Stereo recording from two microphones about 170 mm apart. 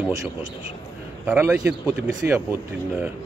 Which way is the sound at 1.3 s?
10° right (ahead or behind).